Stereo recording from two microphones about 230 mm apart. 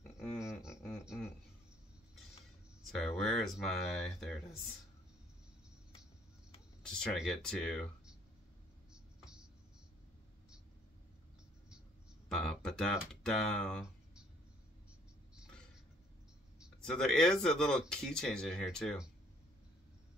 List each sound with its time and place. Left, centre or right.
0.2 s a sound: centre
2.9 s speech: centre
6.8 s speech: centre
8.9 s music: centre
12.3 s speech: centre
15.3 s a sound: centre
16.5 s speech: centre